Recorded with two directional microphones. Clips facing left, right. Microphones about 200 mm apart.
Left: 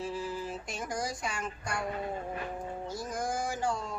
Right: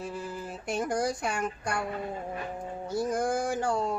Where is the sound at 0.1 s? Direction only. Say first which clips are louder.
Left 1 dB; 60° right (ahead or behind).